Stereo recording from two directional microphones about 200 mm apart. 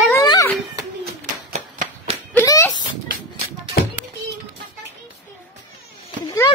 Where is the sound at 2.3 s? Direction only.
15° left (ahead or behind).